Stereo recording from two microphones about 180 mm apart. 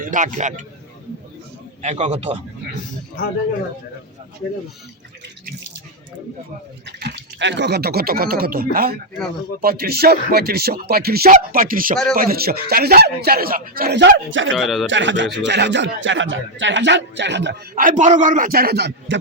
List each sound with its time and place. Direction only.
0.0 s a man's voice: 45° right (ahead or behind)
1.8 s a man's voice: 40° right (ahead or behind)
6.8 s a man's voice: 75° right (ahead or behind)
14.5 s speech: centre (ahead or behind)
14.8 s speech: 90° right
17.7 s a man's voice: 45° right (ahead or behind); by 19.2 s 75° right (ahead or behind)